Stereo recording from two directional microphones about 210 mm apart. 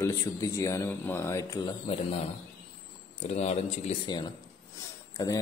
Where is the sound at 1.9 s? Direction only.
30° left (ahead or behind).